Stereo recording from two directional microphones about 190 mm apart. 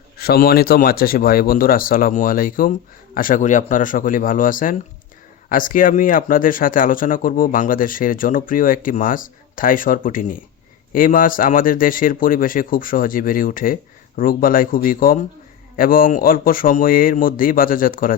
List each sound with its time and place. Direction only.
0.2 s speech: 55° left (ahead or behind)